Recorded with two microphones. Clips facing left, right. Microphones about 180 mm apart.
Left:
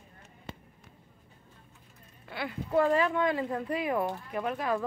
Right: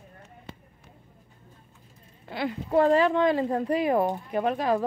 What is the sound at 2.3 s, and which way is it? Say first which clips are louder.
Speech: right 4 dB; 35° right (ahead or behind).